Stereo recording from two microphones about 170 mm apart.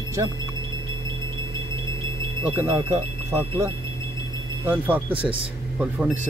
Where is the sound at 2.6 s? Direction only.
25° right (ahead or behind).